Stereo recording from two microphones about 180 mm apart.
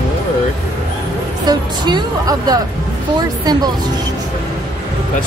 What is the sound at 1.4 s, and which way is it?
A woman's voice, 25° right (ahead or behind).